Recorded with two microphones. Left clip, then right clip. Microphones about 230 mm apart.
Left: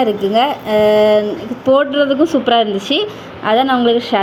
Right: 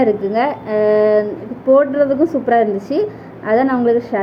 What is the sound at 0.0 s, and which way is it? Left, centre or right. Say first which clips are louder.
Speech: left 2 dB; centre.